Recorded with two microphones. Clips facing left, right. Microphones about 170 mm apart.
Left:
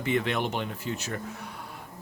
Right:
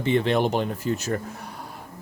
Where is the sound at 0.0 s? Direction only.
30° right (ahead or behind).